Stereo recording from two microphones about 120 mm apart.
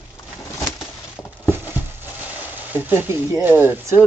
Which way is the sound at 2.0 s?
15° right (ahead or behind).